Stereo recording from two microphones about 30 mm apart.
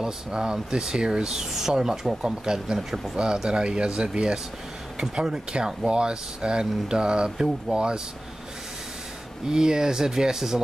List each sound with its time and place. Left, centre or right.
0.0 s speech: right
1.4 s speech: centre; by 8.0 s right
9.5 s speech: right